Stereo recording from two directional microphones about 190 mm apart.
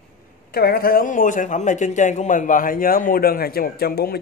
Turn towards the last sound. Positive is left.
turn(degrees=55)  # may be behind; listen again after turning